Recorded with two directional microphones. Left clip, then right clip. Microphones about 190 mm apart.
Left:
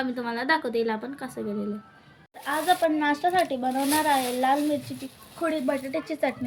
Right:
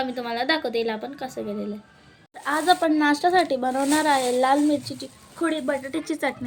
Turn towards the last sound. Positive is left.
turn(degrees=-25)  # may be behind; listen again after turning